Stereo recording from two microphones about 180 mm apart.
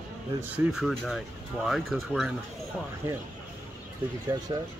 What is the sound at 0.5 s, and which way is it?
Speech, centre (ahead or behind).